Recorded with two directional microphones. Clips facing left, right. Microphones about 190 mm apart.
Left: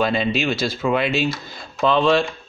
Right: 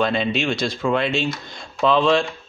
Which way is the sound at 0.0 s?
Centre (ahead or behind).